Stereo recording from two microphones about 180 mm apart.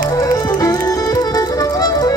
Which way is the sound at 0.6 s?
15° left (ahead or behind).